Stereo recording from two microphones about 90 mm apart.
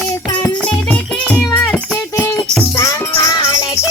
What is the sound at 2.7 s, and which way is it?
Music, 35° left (ahead or behind).